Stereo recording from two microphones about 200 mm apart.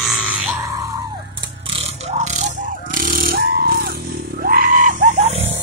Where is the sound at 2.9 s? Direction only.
45° right (ahead or behind).